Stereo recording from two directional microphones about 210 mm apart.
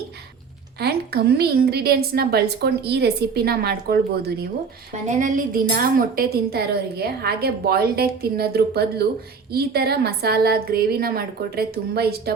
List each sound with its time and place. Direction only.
0.8 s a woman's voice: 50° right (ahead or behind)
5.0 s a woman's voice: 35° right (ahead or behind)